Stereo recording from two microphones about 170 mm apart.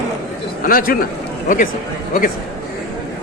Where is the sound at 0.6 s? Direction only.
60° left (ahead or behind).